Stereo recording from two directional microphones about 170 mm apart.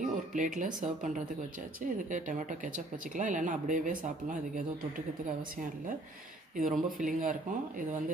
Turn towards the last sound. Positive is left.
turn(degrees=-50)  # may be behind; listen again after turning